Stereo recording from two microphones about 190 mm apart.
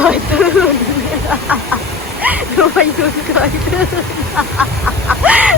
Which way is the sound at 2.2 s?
5° right (ahead or behind).